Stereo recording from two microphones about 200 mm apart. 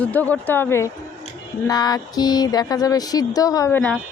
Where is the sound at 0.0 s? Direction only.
10° left (ahead or behind).